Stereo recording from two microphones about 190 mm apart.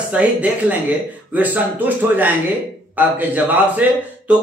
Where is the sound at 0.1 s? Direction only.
10° right (ahead or behind).